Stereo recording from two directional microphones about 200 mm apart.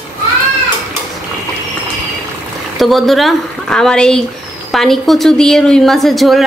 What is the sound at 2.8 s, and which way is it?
A woman's voice, centre (ahead or behind).